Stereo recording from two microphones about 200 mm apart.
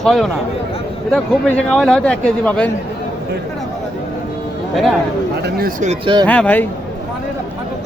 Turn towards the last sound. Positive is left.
turn(degrees=10)  # may be behind; listen again after turning